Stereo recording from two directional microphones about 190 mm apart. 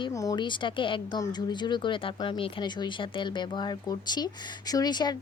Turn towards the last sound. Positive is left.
turn(degrees=20)  # may be behind; listen again after turning